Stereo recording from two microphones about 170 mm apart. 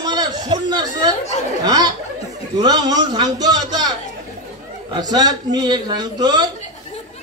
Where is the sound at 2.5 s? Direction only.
25° right (ahead or behind).